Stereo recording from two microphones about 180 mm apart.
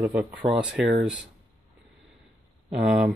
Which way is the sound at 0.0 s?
5° right (ahead or behind).